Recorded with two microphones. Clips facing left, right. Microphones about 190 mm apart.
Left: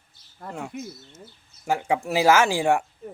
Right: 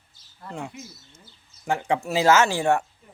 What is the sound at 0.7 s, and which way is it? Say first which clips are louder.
Speech: left 7 dB; 55° left (ahead or behind).